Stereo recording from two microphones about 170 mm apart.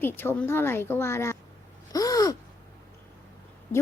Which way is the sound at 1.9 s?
20° left (ahead or behind).